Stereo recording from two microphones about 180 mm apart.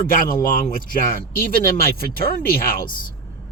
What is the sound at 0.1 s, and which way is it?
Speech, 50° left (ahead or behind).